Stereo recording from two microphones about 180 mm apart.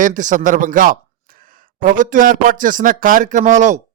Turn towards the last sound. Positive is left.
turn(degrees=-45)  # may be behind; listen again after turning